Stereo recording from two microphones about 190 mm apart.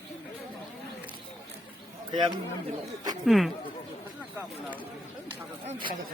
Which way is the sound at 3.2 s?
Centre (ahead or behind).